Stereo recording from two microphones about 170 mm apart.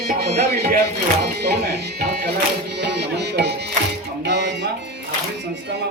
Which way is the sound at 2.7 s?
85° right.